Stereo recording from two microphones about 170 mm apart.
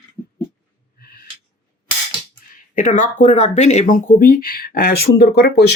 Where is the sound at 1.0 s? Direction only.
60° left (ahead or behind).